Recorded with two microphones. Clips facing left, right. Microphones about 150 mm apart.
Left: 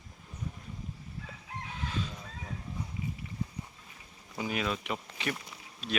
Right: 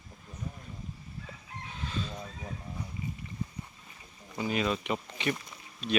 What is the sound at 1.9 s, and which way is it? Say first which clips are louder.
Vehicle: right 1 dB; 10° left (ahead or behind).